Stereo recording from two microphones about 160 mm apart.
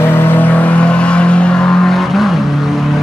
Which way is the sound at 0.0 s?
15° left (ahead or behind).